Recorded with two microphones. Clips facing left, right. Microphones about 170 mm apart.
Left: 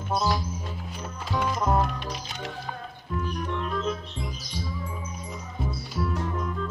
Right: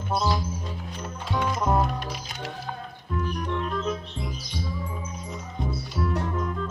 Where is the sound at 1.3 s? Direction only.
Centre (ahead or behind).